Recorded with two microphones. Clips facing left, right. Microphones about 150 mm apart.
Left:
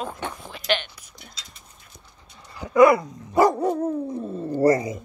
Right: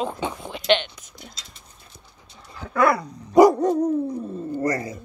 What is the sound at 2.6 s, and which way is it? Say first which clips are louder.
Dog: left 5 dB; 15° left (ahead or behind).